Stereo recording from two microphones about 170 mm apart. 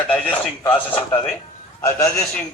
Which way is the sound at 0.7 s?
10° left (ahead or behind).